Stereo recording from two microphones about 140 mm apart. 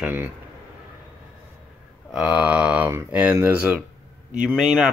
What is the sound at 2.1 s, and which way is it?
Speech, 10° right (ahead or behind).